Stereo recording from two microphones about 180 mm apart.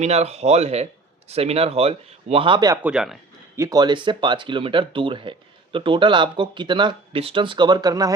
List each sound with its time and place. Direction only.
0.0 s speech: 35° right (ahead or behind)
2.8 s speech: 5° right (ahead or behind)
3.5 s speech: 20° right (ahead or behind)